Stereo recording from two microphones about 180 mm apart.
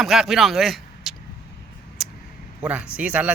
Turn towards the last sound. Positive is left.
turn(degrees=-5)  # may be behind; listen again after turning